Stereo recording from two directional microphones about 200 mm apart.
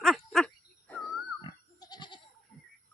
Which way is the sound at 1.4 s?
20° left (ahead or behind).